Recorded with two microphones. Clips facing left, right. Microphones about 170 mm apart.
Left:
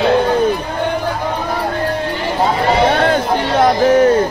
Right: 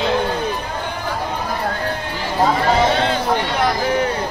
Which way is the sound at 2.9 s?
50° left (ahead or behind).